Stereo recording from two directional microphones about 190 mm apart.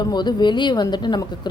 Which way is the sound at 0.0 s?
20° left (ahead or behind).